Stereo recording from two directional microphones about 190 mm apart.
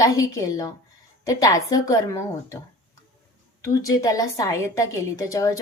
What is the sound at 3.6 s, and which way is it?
A woman's voice, 20° left (ahead or behind).